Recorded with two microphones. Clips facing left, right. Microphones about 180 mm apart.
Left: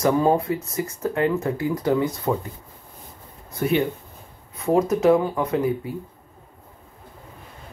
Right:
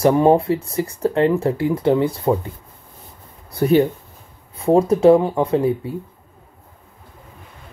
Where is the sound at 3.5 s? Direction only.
35° right (ahead or behind).